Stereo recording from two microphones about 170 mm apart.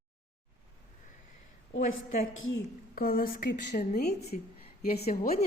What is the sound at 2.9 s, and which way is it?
Speech, 60° left (ahead or behind).